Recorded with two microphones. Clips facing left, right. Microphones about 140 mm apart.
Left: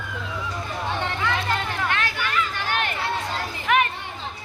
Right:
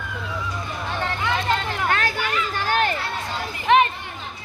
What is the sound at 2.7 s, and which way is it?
Music, 35° right (ahead or behind).